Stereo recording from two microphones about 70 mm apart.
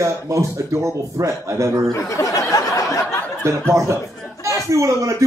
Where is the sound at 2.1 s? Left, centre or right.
Left.